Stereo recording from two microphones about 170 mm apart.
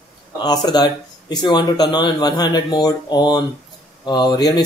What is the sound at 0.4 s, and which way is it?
Speech, 25° left (ahead or behind).